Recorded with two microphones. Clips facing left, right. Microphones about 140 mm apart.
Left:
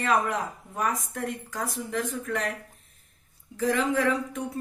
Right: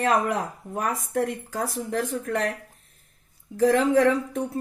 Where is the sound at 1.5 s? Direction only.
40° right (ahead or behind).